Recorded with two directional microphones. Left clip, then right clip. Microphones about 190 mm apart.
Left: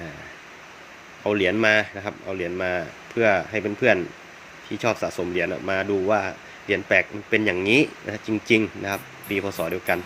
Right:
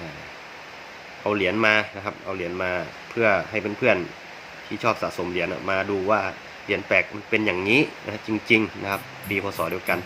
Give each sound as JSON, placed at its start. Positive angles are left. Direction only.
{"t": 1.2, "sound": "speech", "side_deg": 15}